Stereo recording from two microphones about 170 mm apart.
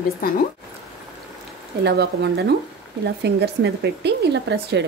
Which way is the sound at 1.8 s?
80° right.